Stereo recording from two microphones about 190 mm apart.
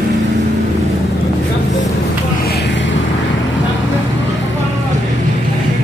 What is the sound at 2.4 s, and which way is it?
Vehicle, 60° left (ahead or behind).